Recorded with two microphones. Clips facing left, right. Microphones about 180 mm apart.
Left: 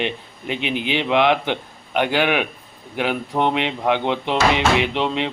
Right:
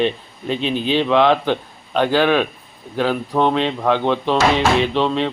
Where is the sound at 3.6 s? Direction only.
20° left (ahead or behind).